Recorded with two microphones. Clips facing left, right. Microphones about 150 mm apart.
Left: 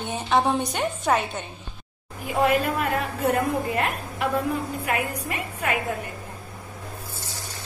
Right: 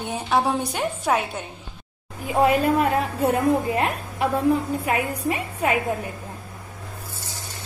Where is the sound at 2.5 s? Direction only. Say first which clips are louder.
Right 4 dB; 35° right (ahead or behind).